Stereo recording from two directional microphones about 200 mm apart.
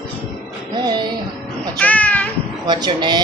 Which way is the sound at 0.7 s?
20° right (ahead or behind).